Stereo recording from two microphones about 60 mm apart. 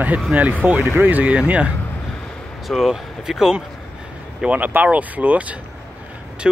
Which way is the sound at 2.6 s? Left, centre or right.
Centre.